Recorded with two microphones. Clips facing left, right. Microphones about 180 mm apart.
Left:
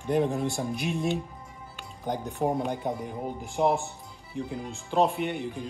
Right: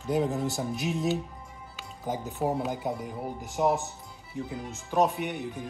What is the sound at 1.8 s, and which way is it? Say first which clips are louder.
Music: left 1 dB; 5° right (ahead or behind).